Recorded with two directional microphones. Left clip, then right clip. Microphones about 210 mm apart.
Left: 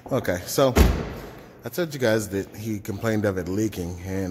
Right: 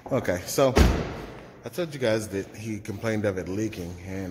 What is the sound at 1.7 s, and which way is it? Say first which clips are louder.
Speech: left 3 dB; 35° left (ahead or behind).